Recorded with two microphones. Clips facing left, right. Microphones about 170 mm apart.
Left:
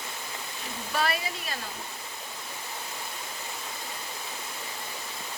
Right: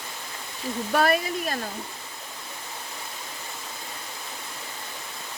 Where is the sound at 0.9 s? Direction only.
50° right (ahead or behind).